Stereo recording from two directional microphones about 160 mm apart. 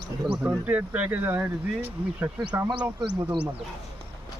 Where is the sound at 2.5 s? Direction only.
25° right (ahead or behind).